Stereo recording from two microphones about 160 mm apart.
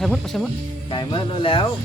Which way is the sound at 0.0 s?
Centre (ahead or behind).